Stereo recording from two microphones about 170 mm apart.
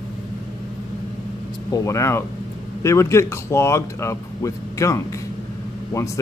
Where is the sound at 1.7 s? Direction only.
20° left (ahead or behind).